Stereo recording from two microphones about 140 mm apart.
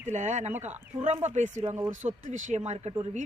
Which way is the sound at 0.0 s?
55° right (ahead or behind).